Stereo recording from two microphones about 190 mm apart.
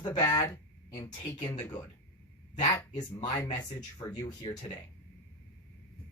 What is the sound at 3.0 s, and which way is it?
Speech, 20° left (ahead or behind).